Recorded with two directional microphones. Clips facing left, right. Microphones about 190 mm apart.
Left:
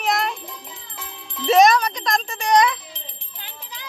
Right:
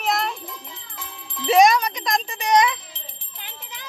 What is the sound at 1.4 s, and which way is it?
A child's voice, 15° right (ahead or behind).